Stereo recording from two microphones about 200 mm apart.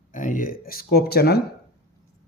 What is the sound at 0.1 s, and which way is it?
Speech, 40° left (ahead or behind).